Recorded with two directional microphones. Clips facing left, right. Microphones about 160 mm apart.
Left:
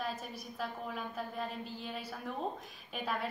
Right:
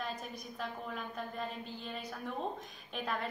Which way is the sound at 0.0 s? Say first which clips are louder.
Left 1 dB; 5° left (ahead or behind).